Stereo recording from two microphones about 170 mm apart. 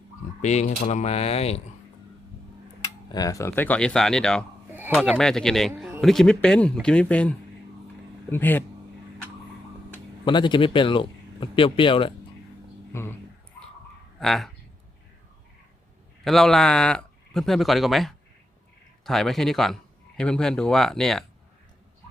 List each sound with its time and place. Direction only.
0.4 s speech: 40° left (ahead or behind)
2.8 s speech: 20° left (ahead or behind)
10.2 s speech: 25° left (ahead or behind)
12.9 s speech: 15° left (ahead or behind)
14.2 s speech: centre (ahead or behind)
16.2 s speech: centre (ahead or behind)